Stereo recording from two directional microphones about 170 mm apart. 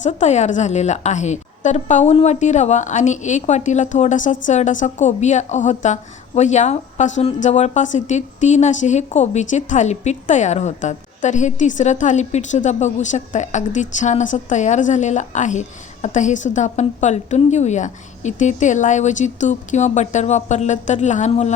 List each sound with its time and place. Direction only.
0.0 s a woman's voice: 45° left (ahead or behind)